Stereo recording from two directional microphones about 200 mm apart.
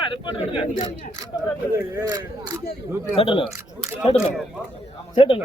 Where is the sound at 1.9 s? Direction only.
15° right (ahead or behind).